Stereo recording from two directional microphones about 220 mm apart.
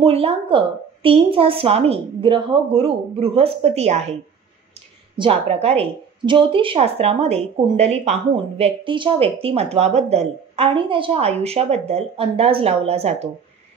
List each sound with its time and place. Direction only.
0.0 s a woman's voice: 25° right (ahead or behind)